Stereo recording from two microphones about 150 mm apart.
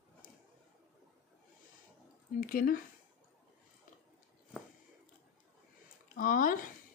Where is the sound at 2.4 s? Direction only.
65° left (ahead or behind).